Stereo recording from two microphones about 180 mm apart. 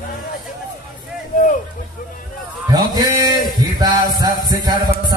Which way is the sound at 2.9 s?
20° right (ahead or behind).